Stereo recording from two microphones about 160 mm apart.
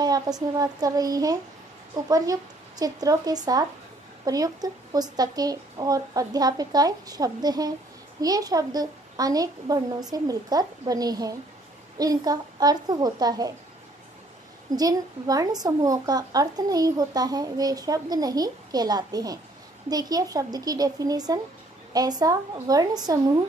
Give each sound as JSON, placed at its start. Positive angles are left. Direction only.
{"t": 0.0, "sound": "speech", "side_deg": -25}
{"t": 14.8, "sound": "speech", "side_deg": -25}